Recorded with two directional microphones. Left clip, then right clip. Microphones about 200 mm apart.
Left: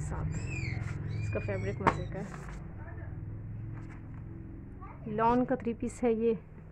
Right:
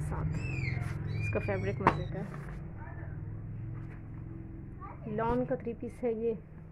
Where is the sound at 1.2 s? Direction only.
15° right (ahead or behind).